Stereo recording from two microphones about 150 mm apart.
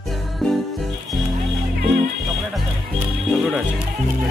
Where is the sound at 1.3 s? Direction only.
70° right (ahead or behind).